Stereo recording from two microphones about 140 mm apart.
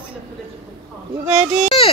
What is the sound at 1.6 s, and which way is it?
Yodeling, 40° left (ahead or behind).